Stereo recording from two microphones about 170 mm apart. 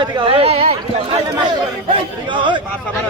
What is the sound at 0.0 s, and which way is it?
Speech, 30° right (ahead or behind).